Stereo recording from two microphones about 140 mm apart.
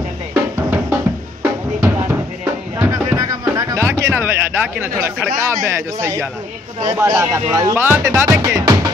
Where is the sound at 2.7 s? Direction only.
20° right (ahead or behind).